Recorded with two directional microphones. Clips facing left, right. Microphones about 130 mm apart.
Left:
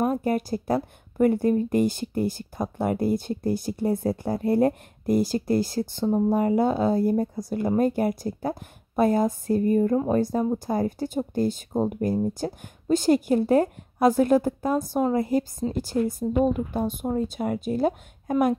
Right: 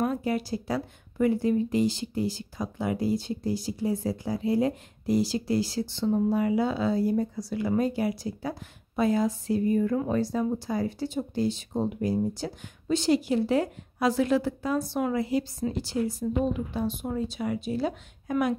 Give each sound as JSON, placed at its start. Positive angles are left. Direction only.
{"t": 0.0, "sound": "speech", "side_deg": 50}